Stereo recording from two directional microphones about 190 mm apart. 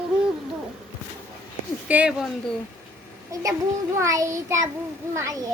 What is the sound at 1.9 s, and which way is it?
Speech, 5° right (ahead or behind).